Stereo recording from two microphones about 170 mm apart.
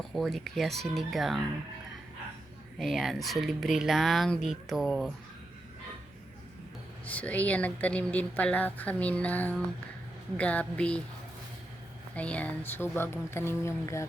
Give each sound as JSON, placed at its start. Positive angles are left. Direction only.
{"t": 0.0, "sound": "speech", "side_deg": 0}
{"t": 2.7, "sound": "speech", "side_deg": 0}
{"t": 7.0, "sound": "speech", "side_deg": 10}
{"t": 12.1, "sound": "speech", "side_deg": 10}